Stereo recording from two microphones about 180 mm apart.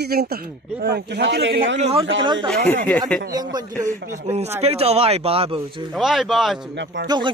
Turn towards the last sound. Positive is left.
turn(degrees=-25)  # may be behind; listen again after turning